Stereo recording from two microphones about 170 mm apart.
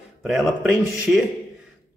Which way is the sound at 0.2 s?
Centre (ahead or behind).